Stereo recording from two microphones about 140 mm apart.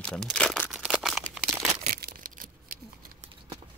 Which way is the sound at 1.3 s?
Centre (ahead or behind).